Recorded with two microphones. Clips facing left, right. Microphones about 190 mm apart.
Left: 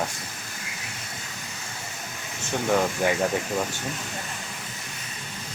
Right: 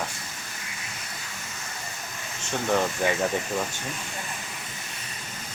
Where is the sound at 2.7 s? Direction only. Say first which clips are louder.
Left 1 dB; 5° left (ahead or behind).